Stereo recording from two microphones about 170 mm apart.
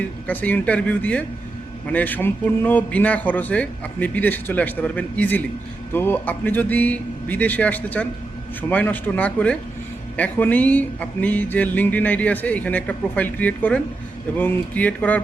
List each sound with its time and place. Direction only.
0.3 s speech: 10° left (ahead or behind)